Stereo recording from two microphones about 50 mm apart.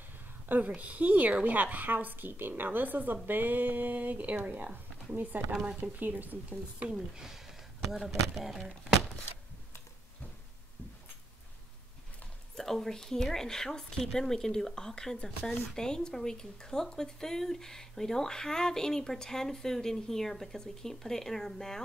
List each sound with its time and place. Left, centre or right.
0.7 s a woman's voice: right
5.5 s speech: centre
5.8 s a woman's voice: right
6.9 s speech: centre
12.5 s speech: centre